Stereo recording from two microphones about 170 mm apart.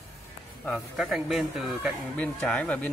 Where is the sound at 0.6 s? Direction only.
Centre (ahead or behind).